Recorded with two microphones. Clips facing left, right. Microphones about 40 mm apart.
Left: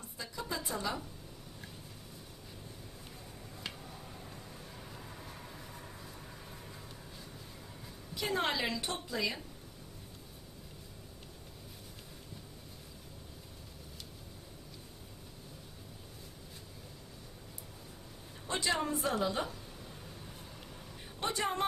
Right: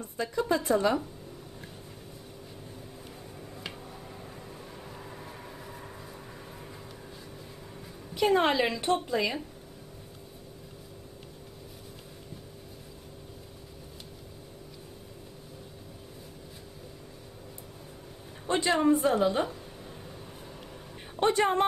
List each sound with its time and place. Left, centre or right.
0.0 s a sound: right
0.7 s speech: right
4.9 s vehicle: centre
8.1 s a woman's voice: right
18.5 s a woman's voice: right
21.2 s speech: right